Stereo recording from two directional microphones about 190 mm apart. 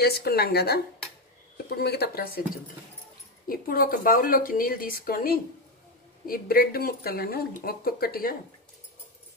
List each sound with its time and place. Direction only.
0.0 s speech: 55° left (ahead or behind)
1.8 s speech: 55° left (ahead or behind)